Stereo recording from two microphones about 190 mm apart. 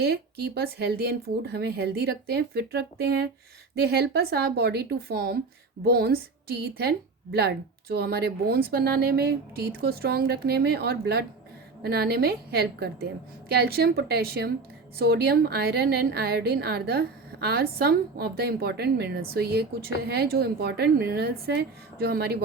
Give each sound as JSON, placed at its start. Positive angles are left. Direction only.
{"t": 0.0, "sound": "a woman's voice", "side_deg": -55}